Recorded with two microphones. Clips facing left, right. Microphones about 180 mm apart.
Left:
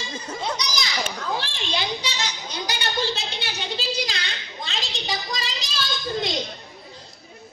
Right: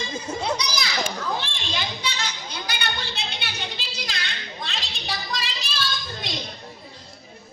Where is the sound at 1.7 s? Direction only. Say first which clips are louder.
Left 2 dB; 50° right (ahead or behind).